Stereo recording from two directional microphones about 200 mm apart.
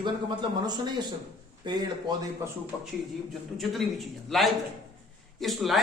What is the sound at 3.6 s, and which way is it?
A man's voice, centre (ahead or behind).